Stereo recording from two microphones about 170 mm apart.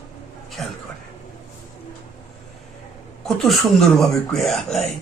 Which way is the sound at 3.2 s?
Centre (ahead or behind).